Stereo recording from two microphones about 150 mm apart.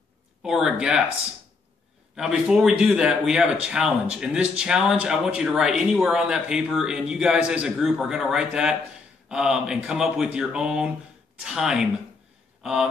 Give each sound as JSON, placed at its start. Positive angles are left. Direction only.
{"t": 0.4, "sound": "speech", "side_deg": -5}
{"t": 2.1, "sound": "speech", "side_deg": -5}